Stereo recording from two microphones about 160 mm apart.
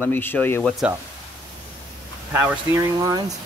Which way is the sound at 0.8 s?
5° right (ahead or behind).